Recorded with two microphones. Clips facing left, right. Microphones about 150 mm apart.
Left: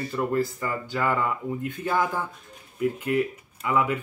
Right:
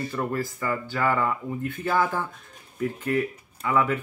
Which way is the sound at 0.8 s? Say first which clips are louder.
Even; 15° left (ahead or behind).